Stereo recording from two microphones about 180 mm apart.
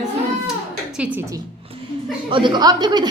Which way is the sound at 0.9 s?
10° right (ahead or behind).